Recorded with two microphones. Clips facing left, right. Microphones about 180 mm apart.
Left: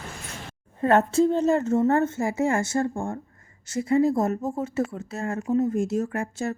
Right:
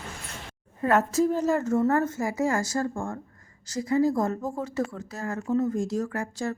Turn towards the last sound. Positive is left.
turn(degrees=25)  # may be behind; listen again after turning